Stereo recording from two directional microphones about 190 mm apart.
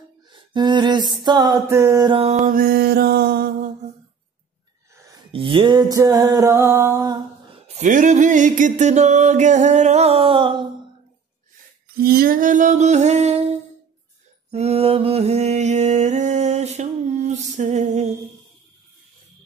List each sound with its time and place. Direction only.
0.3 s music: 25° right (ahead or behind)
2.1 s music: 30° right (ahead or behind)
2.4 s mantra: 50° right (ahead or behind)
5.3 s music: 25° right (ahead or behind)
7.6 s music: 40° right (ahead or behind)
11.9 s a sound: 50° right (ahead or behind); by 13.4 s 35° right (ahead or behind)
14.5 s mantra: 35° right (ahead or behind)